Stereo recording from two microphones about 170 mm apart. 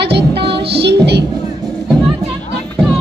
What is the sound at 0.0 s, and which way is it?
Child singing, 75° right (ahead or behind).